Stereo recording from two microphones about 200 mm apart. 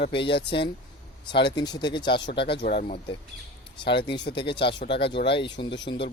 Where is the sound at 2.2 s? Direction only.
55° left (ahead or behind).